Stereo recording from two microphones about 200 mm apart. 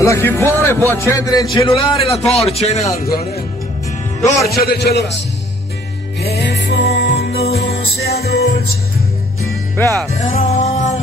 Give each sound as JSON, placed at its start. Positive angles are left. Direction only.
{"t": 0.0, "sound": "a man's voice", "side_deg": 15}
{"t": 3.0, "sound": "a man's voice", "side_deg": 50}
{"t": 4.5, "sound": "a man's voice", "side_deg": 50}
{"t": 6.2, "sound": "music", "side_deg": 55}
{"t": 9.8, "sound": "speech", "side_deg": 10}
{"t": 10.1, "sound": "music", "side_deg": 35}